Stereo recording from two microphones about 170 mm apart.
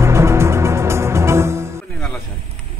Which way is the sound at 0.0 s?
15° right (ahead or behind).